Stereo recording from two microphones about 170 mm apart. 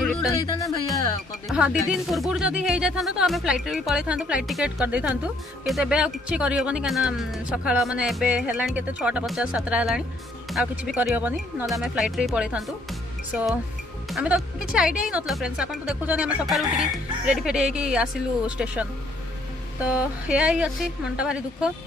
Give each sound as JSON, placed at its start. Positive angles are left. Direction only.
{"t": 0.0, "sound": "music", "side_deg": 0}
{"t": 0.3, "sound": "music", "side_deg": 20}
{"t": 1.5, "sound": "speech", "side_deg": -5}
{"t": 14.1, "sound": "speech", "side_deg": -5}